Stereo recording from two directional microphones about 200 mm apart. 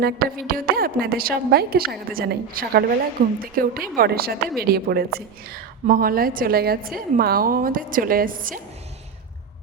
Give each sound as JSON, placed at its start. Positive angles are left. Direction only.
{"t": 0.0, "sound": "a woman's voice", "side_deg": -50}